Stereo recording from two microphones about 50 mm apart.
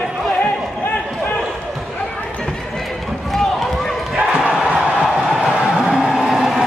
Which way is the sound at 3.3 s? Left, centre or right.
Centre.